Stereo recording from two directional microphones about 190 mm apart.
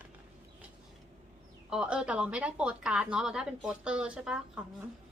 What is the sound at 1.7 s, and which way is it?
A woman's voice, 5° right (ahead or behind).